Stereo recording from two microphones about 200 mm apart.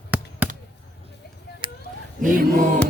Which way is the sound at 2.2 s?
40° right (ahead or behind).